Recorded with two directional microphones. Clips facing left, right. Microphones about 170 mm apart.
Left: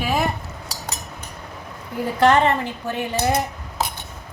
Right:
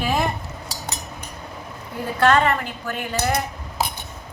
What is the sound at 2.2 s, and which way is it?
Speech, 20° left (ahead or behind).